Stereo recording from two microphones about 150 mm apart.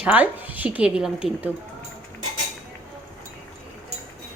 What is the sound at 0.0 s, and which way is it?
A woman's voice, 10° right (ahead or behind).